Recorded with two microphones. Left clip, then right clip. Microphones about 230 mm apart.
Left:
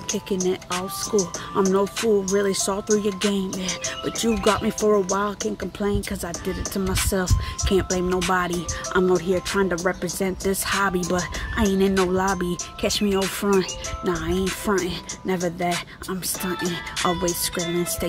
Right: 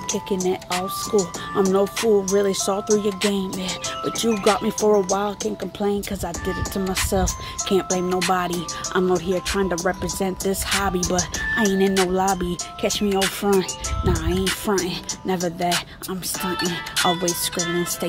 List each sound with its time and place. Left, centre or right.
0.4 s speech: centre
2.0 s speech: centre
2.2 s speech: centre
16.5 s speech: right